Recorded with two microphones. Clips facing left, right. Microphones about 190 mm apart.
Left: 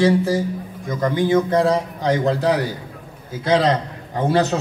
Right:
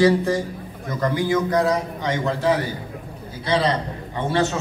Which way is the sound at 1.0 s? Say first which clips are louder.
Left 3 dB; 20° left (ahead or behind).